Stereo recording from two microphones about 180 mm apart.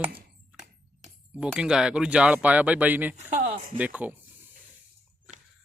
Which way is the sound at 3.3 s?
40° right (ahead or behind).